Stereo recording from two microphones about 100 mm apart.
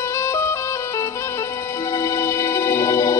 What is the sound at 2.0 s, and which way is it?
Music, 30° left (ahead or behind).